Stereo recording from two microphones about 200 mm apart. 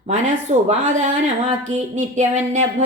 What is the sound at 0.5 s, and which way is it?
Speech, 35° right (ahead or behind).